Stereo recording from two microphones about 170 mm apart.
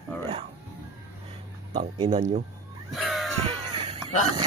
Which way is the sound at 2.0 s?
45° right (ahead or behind).